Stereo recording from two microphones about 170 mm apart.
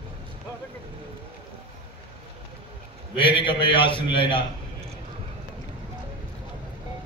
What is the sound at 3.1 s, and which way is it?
A man's voice, 30° left (ahead or behind).